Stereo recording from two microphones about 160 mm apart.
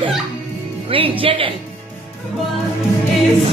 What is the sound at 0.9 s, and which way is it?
Speech, 35° right (ahead or behind).